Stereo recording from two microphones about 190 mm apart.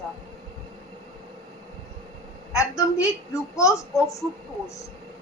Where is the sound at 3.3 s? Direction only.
15° left (ahead or behind).